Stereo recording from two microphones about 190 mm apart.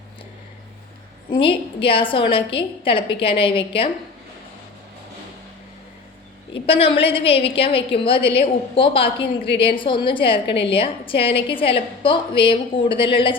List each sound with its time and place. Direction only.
1.3 s a woman's voice: 25° left (ahead or behind)
6.5 s a woman's voice: 30° left (ahead or behind)